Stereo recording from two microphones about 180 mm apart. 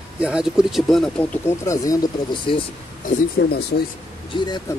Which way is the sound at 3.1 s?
60° left (ahead or behind).